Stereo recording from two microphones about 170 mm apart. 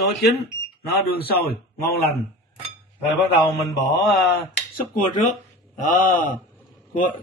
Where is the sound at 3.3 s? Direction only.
40° left (ahead or behind).